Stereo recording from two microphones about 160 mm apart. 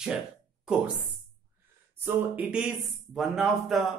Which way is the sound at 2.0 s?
10° right (ahead or behind).